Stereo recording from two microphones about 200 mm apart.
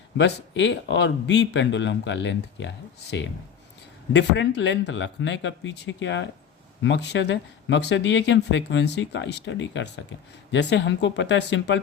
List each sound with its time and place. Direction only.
0.2 s speech: 65° left (ahead or behind)